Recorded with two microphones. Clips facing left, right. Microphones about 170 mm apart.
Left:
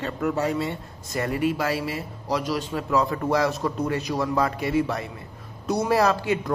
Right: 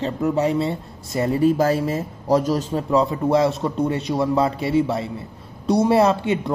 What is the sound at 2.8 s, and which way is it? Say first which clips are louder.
Speech: right 4 dB; 25° right (ahead or behind).